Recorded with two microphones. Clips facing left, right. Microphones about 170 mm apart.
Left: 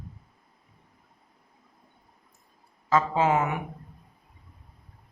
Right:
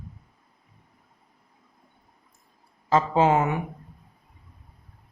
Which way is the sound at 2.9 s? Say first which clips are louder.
Right 3 dB; 30° right (ahead or behind).